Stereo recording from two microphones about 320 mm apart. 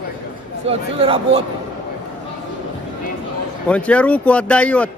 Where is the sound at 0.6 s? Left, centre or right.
Centre.